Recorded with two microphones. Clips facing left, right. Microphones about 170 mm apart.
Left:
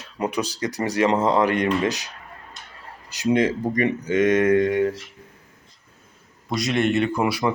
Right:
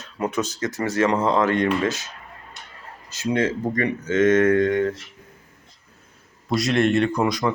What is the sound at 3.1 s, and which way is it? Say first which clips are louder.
Speech: left 2 dB; 15° left (ahead or behind).